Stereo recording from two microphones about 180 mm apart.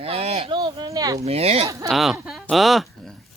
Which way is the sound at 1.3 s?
35° right (ahead or behind).